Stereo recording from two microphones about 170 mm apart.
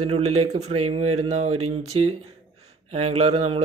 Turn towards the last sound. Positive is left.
turn(degrees=-35)  # may be behind; listen again after turning